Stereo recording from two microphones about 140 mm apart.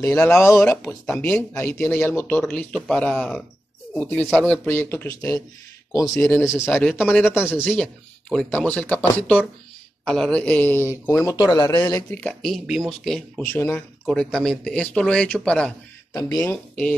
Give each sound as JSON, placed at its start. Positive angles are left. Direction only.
{"t": 0.0, "sound": "a man's voice", "side_deg": 15}
{"t": 7.5, "sound": "a man's voice", "side_deg": 5}
{"t": 10.0, "sound": "speech", "side_deg": 5}
{"t": 10.4, "sound": "speech", "side_deg": 15}
{"t": 12.2, "sound": "speech", "side_deg": 5}
{"t": 13.5, "sound": "a man's voice", "side_deg": 15}
{"t": 14.0, "sound": "speech", "side_deg": 5}
{"t": 16.1, "sound": "speech", "side_deg": 25}